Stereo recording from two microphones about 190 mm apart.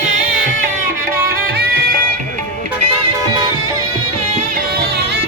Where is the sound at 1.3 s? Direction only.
60° right (ahead or behind).